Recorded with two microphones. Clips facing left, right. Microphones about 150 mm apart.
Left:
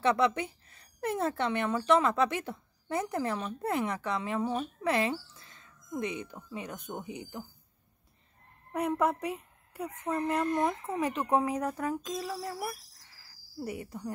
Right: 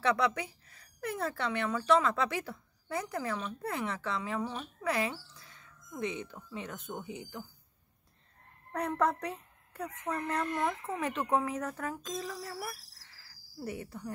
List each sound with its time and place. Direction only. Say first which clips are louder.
0.0 s speech: left 3 dB; 25° left (ahead or behind)
8.7 s speech: left 2 dB; 10° left (ahead or behind)